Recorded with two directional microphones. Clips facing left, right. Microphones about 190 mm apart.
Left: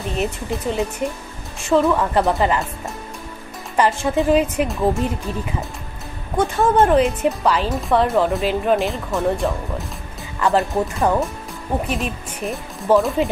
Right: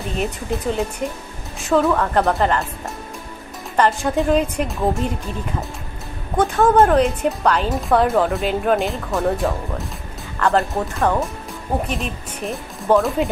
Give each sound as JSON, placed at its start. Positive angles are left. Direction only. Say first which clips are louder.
{"t": 0.2, "sound": "speech", "louder": "even", "side_deg": 0}
{"t": 3.7, "sound": "speech", "louder": "even", "side_deg": 5}